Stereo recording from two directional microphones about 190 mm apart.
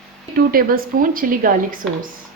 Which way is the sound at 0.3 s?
50° right (ahead or behind).